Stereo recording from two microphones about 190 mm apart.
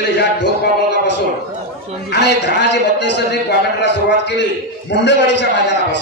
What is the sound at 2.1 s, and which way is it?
A man's voice, 60° left (ahead or behind).